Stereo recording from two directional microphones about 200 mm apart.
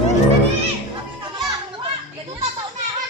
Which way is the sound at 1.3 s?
20° right (ahead or behind).